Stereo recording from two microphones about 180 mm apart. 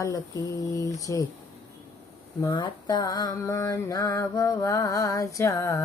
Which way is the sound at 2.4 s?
25° left (ahead or behind).